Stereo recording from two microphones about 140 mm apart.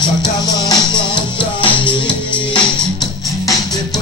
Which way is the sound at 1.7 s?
10° left (ahead or behind).